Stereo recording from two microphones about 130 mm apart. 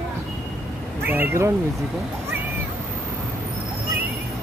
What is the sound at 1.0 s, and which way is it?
Cat, 15° right (ahead or behind).